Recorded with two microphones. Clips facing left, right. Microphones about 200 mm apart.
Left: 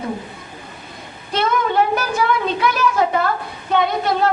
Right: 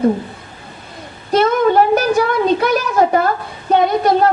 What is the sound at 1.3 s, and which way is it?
A child's voice, 45° right (ahead or behind).